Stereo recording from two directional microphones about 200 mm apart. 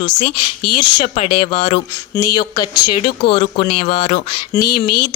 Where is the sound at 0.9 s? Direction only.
30° left (ahead or behind).